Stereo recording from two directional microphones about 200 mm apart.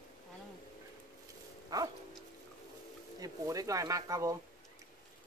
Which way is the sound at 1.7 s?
20° right (ahead or behind).